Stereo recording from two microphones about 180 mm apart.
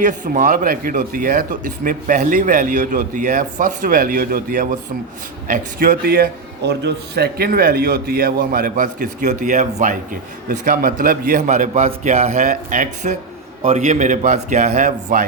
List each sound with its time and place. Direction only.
0.0 s a man's voice: 45° right (ahead or behind)